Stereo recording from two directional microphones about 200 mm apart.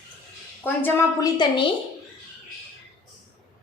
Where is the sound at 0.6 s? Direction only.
10° left (ahead or behind).